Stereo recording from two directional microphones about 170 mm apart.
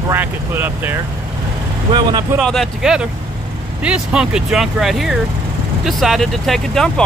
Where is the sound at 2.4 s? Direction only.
Centre (ahead or behind).